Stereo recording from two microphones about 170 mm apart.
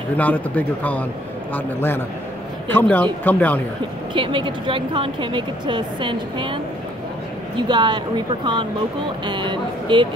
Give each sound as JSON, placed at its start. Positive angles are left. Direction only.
{"t": 0.2, "sound": "a man's voice", "side_deg": 10}
{"t": 4.1, "sound": "speech", "side_deg": -30}
{"t": 9.2, "sound": "speech", "side_deg": -30}